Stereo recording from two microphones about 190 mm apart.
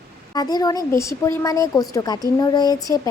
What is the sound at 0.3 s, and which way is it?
A woman's voice, 20° left (ahead or behind).